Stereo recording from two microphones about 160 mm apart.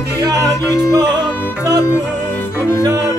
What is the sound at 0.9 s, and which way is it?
Music, 25° right (ahead or behind).